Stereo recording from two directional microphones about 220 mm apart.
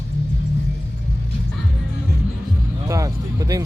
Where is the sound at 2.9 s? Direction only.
15° right (ahead or behind).